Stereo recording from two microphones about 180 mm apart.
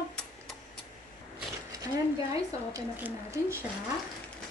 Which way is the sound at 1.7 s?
20° right (ahead or behind).